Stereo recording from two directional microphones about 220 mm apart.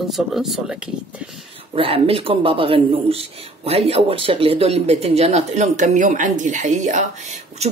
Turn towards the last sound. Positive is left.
turn(degrees=-35)  # may be behind; listen again after turning